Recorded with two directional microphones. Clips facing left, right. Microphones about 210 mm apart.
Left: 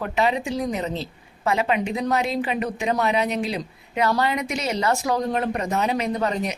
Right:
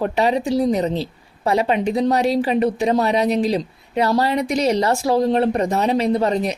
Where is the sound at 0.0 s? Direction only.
35° right (ahead or behind).